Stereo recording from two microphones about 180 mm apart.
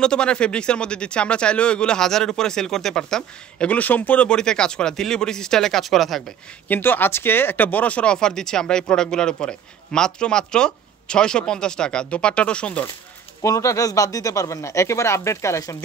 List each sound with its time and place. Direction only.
0.0 s speech: 5° left (ahead or behind)
6.7 s speech: 10° left (ahead or behind)
13.4 s speech: 15° left (ahead or behind)